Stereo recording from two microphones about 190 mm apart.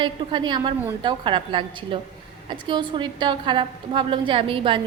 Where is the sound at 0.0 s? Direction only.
25° right (ahead or behind).